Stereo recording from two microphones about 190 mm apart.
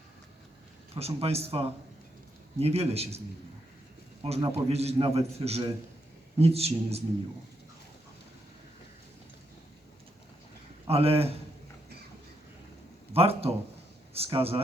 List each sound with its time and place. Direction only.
0.9 s a man's voice: 30° right (ahead or behind)
4.2 s a man's voice: 25° right (ahead or behind)
10.8 s a man's voice: 30° right (ahead or behind)
13.1 s a man's voice: 30° right (ahead or behind)